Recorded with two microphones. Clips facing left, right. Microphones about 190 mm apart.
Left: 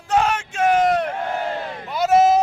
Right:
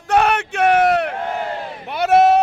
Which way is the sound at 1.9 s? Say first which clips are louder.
Right 2 dB; 60° right (ahead or behind).